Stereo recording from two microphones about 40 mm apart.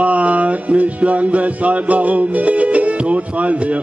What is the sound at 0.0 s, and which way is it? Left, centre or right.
Music, right.